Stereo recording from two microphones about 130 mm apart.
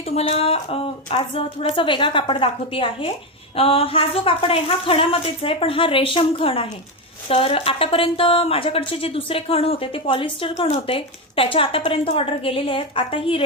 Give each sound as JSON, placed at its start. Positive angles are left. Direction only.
{"t": 0.1, "sound": "speech", "side_deg": 50}